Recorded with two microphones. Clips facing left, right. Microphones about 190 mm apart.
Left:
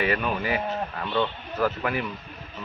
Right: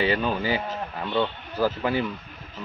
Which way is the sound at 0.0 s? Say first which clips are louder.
Right 2 dB; 30° right (ahead or behind).